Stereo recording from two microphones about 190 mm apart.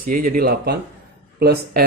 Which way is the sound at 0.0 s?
45° right (ahead or behind).